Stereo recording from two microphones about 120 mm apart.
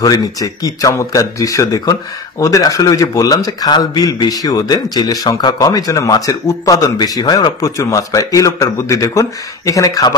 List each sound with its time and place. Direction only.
0.0 s a man's voice: 30° left (ahead or behind)